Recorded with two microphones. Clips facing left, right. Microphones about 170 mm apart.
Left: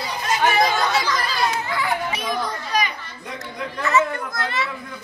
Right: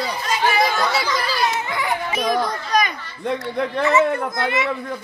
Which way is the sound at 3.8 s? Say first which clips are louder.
Right 2 dB; 25° right (ahead or behind).